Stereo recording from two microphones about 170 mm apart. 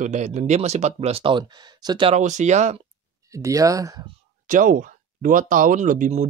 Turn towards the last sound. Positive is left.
turn(degrees=-50)  # may be behind; listen again after turning